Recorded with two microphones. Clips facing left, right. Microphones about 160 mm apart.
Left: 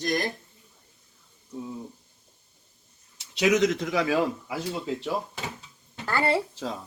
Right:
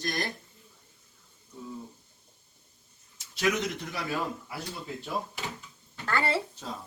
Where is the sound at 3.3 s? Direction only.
85° left.